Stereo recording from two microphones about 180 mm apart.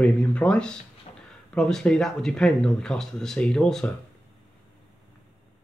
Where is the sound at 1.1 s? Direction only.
35° left (ahead or behind).